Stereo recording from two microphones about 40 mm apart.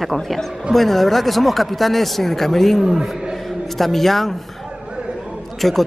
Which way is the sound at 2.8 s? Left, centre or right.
Centre.